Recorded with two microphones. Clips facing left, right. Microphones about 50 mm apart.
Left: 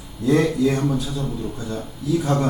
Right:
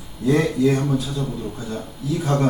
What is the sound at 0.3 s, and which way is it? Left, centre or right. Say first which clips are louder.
Speech: even; centre.